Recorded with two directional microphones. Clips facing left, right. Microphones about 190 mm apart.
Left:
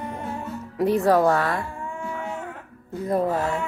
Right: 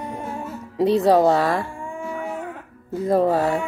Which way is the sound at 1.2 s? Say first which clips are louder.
Right 3 dB; 20° right (ahead or behind).